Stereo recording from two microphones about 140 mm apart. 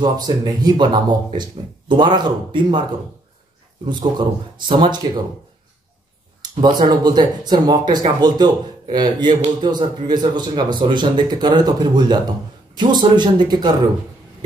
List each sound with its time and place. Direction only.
0.0 s speech: 30° right (ahead or behind)
3.9 s speech: 30° right (ahead or behind)
6.4 s speech: 30° right (ahead or behind)